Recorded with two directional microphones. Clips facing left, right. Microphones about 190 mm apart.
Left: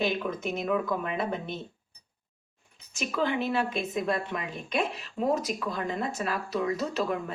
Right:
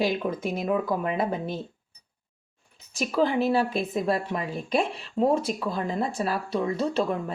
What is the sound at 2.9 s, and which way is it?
Speech, 35° right (ahead or behind).